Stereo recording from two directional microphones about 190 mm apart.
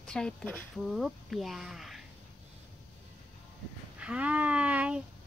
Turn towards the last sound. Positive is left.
turn(degrees=-5)  # may be behind; listen again after turning